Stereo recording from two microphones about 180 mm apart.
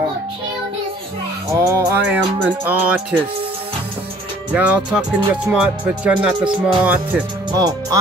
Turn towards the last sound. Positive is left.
turn(degrees=-20)  # may be behind; listen again after turning